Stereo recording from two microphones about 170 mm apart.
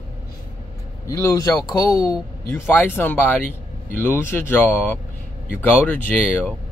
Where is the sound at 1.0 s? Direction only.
20° left (ahead or behind).